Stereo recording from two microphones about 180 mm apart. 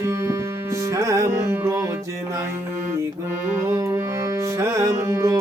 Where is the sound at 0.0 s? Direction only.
15° right (ahead or behind).